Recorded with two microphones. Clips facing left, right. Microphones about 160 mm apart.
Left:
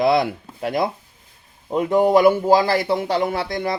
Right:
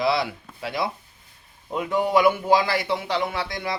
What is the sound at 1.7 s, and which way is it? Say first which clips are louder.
A man's voice: left 6 dB; 40° left (ahead or behind).